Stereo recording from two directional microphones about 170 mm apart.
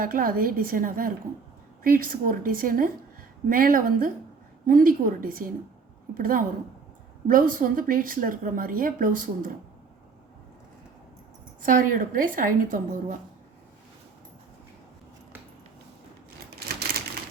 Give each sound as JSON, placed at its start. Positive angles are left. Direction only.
{"t": 0.0, "sound": "a woman's voice", "side_deg": -55}
{"t": 11.6, "sound": "a woman's voice", "side_deg": -50}